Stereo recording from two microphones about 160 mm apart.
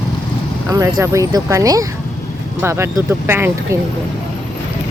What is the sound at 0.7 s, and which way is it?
Speech, 20° right (ahead or behind).